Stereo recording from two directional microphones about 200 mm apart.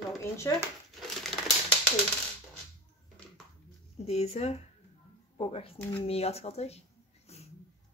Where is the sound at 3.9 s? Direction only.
30° left (ahead or behind).